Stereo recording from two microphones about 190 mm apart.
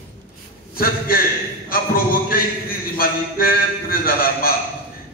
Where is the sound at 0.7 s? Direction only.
50° left (ahead or behind).